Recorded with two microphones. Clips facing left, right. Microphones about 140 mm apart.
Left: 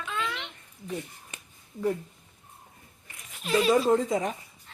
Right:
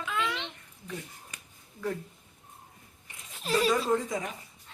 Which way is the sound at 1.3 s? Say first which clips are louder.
Left 3 dB; 25° left (ahead or behind).